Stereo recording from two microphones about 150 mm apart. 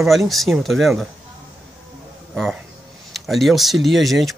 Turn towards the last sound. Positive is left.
turn(degrees=0)  # may be behind; listen again after turning